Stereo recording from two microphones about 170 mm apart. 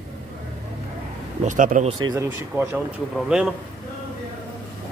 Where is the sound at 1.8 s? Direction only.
25° right (ahead or behind).